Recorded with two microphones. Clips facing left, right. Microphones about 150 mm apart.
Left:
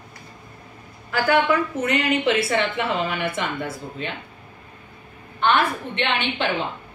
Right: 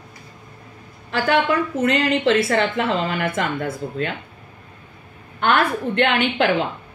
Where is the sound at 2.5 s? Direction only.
40° right (ahead or behind).